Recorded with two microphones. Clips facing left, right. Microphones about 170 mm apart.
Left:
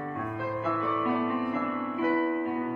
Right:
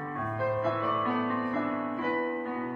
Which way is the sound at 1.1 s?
15° left (ahead or behind).